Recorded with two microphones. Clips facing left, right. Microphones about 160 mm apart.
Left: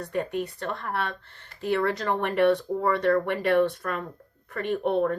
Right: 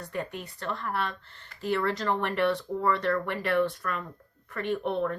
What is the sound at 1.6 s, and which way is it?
Speech, 20° left (ahead or behind).